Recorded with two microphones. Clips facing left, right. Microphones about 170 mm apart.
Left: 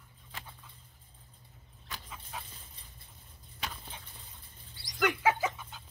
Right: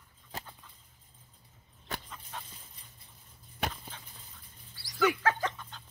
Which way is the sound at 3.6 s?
55° right (ahead or behind).